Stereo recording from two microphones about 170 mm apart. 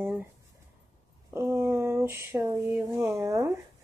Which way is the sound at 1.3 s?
15° right (ahead or behind).